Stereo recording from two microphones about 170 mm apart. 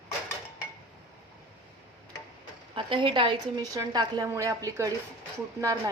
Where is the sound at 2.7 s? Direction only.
30° right (ahead or behind).